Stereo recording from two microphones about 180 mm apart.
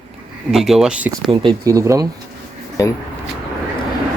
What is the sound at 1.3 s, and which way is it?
Speech, 25° right (ahead or behind).